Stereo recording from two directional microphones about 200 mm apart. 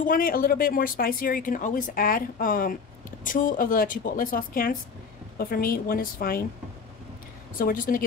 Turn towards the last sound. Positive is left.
turn(degrees=45)  # may be behind; listen again after turning